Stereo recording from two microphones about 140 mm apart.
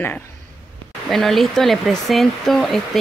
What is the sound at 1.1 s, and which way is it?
Speech, centre (ahead or behind).